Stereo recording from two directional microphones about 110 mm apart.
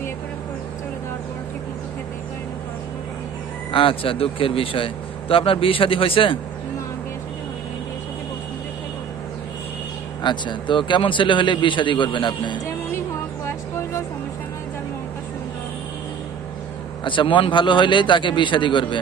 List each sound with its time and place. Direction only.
3.7 s a man's voice: 55° left (ahead or behind)
10.2 s a man's voice: 45° left (ahead or behind)
17.0 s a man's voice: 50° left (ahead or behind)